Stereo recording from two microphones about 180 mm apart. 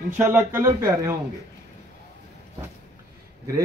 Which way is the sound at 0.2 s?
10° right (ahead or behind).